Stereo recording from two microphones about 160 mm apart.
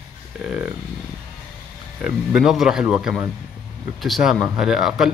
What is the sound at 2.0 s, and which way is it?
A man's voice, 5° right (ahead or behind).